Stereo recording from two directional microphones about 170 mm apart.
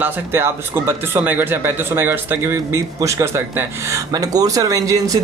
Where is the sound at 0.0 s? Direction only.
15° right (ahead or behind).